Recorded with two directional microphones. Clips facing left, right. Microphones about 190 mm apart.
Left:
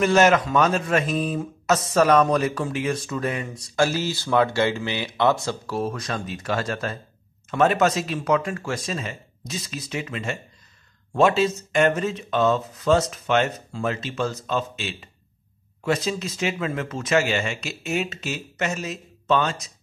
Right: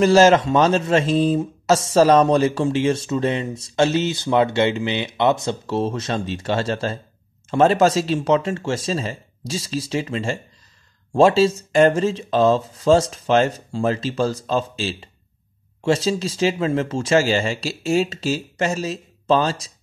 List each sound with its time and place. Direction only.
0.0 s speech: 30° right (ahead or behind)